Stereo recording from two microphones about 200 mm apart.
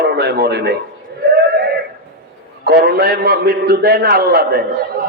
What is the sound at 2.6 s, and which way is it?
A man's voice, 50° right (ahead or behind).